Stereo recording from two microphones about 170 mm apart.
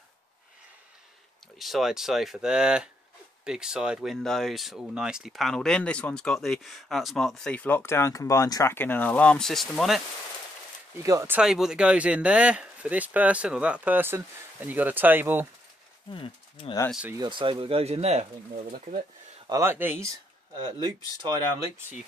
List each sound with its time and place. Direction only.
1.6 s speech: centre (ahead or behind)
11.0 s speech: 15° right (ahead or behind)
16.1 s speech: 30° left (ahead or behind)
17.2 s speech: 30° right (ahead or behind); by 19.0 s 50° right (ahead or behind)
19.4 s speech: 15° right (ahead or behind)